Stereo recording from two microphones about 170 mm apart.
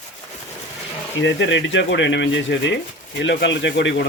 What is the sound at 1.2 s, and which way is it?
Speech, 90° left.